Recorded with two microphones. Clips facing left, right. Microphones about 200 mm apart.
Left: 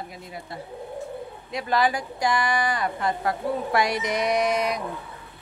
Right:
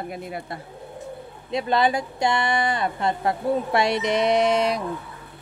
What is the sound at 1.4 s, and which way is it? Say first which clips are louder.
A woman's voice: right 3 dB; 25° right (ahead or behind).